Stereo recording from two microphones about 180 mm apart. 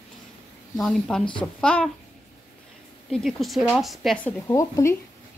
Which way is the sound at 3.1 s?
Centre (ahead or behind).